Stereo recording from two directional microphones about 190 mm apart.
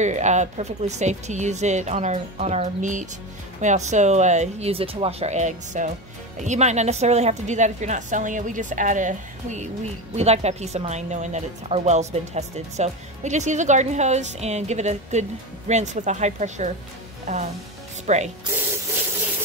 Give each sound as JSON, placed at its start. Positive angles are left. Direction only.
{"t": 0.0, "sound": "speech", "side_deg": -40}